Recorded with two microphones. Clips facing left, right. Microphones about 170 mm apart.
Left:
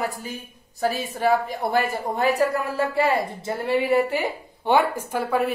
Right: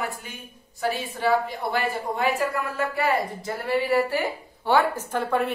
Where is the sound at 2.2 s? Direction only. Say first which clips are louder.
Left 4 dB; 35° left (ahead or behind).